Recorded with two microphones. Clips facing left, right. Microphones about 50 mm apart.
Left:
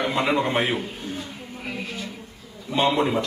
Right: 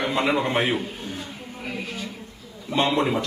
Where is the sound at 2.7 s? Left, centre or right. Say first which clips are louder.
Left 1 dB; centre.